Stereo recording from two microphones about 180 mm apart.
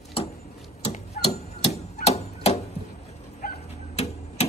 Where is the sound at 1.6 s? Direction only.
35° left (ahead or behind).